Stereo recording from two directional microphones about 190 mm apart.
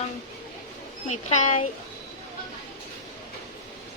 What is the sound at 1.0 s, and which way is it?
Speech, 35° left (ahead or behind).